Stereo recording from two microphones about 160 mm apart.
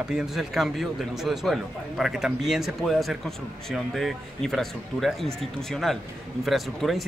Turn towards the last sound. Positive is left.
turn(degrees=0)  # may be behind; listen again after turning